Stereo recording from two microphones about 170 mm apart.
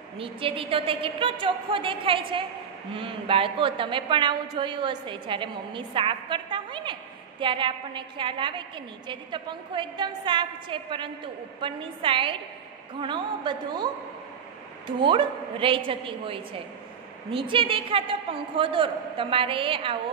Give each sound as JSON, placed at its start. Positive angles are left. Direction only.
{"t": 0.2, "sound": "a man's voice", "side_deg": -30}
{"t": 14.9, "sound": "a man's voice", "side_deg": -30}